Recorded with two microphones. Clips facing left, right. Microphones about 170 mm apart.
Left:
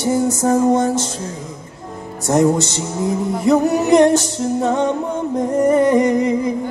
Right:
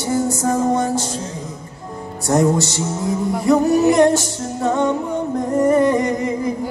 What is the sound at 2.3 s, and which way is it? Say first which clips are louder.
Music: left 1 dB; 20° left (ahead or behind).